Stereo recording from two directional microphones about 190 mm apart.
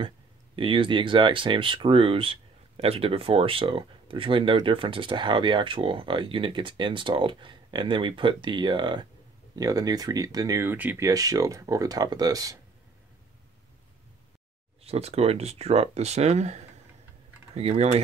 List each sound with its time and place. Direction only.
0.6 s speech: 25° right (ahead or behind)
14.8 s speech: 35° right (ahead or behind)